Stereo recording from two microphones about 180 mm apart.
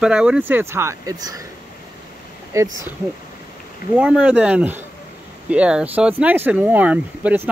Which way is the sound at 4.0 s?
5° right (ahead or behind).